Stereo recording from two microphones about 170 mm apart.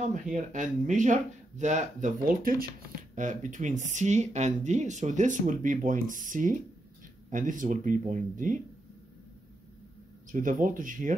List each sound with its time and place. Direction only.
0.1 s speech: 45° right (ahead or behind)
10.3 s speech: 50° right (ahead or behind)